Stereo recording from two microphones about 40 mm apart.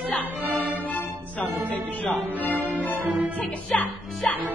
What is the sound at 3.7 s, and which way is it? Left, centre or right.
Speech, left.